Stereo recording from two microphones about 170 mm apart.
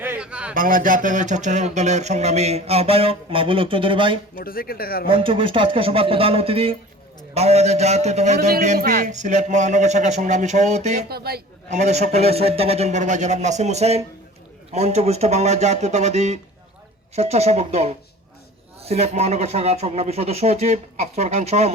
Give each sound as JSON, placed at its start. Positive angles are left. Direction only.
{"t": 0.0, "sound": "a sound", "side_deg": -10}
{"t": 0.5, "sound": "speech", "side_deg": -55}
{"t": 4.4, "sound": "speech", "side_deg": 60}
{"t": 5.0, "sound": "speech", "side_deg": -30}
{"t": 8.8, "sound": "a man's voice", "side_deg": -70}
{"t": 9.0, "sound": "a man's voice", "side_deg": -45}
{"t": 11.1, "sound": "a man's voice", "side_deg": -65}
{"t": 11.7, "sound": "speech", "side_deg": -40}